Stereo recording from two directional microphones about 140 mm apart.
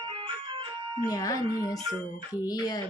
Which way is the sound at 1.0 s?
25° left (ahead or behind).